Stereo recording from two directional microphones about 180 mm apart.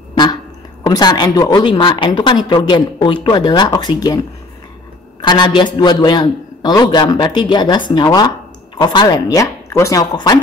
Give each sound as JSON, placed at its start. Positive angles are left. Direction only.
{"t": 0.1, "sound": "a sound", "side_deg": 25}
{"t": 0.8, "sound": "a man's voice", "side_deg": 25}
{"t": 5.2, "sound": "a man's voice", "side_deg": 25}